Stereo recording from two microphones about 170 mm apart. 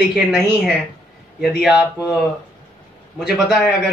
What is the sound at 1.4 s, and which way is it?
Speech, centre (ahead or behind).